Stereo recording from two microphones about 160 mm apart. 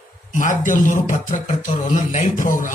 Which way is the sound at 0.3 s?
50° left (ahead or behind).